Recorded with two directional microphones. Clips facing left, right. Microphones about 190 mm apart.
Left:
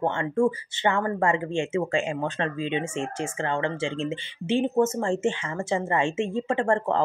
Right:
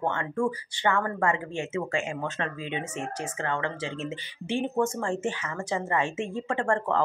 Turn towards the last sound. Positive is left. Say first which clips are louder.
# left 3 dB
turn(degrees=25)  # may be behind; listen again after turning